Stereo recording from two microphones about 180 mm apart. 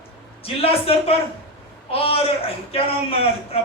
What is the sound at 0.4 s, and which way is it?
A man's voice, 30° left (ahead or behind).